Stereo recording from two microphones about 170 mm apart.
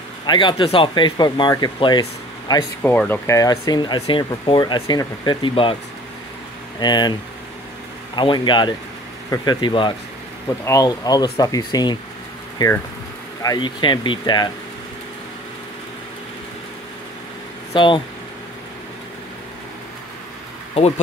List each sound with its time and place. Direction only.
0.3 s speech: 30° left (ahead or behind)
2.8 s speech: 10° left (ahead or behind); by 5.8 s 30° left (ahead or behind)
6.8 s speech: 25° left (ahead or behind)
8.2 s speech: 30° left (ahead or behind)
17.7 s speech: 30° left (ahead or behind)